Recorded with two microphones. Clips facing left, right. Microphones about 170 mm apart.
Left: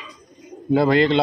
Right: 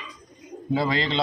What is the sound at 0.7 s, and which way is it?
Speech, 60° left (ahead or behind).